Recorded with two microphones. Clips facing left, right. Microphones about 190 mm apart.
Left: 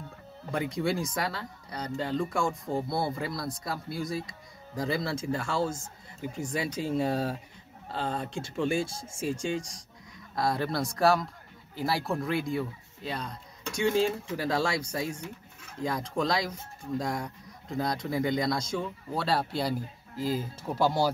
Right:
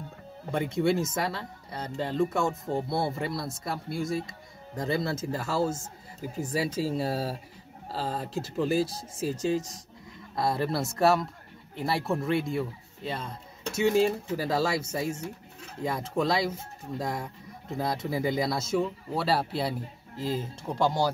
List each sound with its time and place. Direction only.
0.5 s speech: centre (ahead or behind)
15.2 s pigeon: 35° right (ahead or behind)
15.8 s speech: 5° right (ahead or behind)